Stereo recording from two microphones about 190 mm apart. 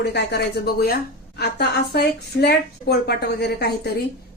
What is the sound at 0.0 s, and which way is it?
A woman's voice, 60° left (ahead or behind).